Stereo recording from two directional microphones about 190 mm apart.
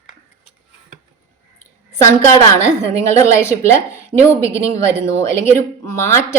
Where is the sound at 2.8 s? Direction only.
15° left (ahead or behind).